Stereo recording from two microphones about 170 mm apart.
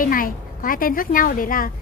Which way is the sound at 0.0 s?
55° left (ahead or behind).